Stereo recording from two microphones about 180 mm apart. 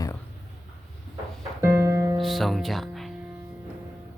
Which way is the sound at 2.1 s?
Centre (ahead or behind).